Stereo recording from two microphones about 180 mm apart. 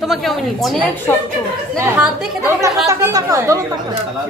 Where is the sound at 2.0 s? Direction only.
5° right (ahead or behind).